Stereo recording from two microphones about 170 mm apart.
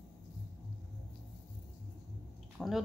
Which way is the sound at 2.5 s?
Centre (ahead or behind).